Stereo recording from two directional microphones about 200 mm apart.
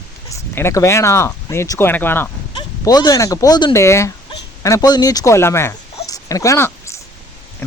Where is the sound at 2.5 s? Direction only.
20° left (ahead or behind).